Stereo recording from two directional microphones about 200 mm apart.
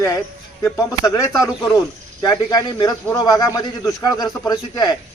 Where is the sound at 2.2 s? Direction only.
20° left (ahead or behind).